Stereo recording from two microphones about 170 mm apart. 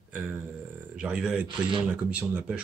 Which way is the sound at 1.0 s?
5° right (ahead or behind).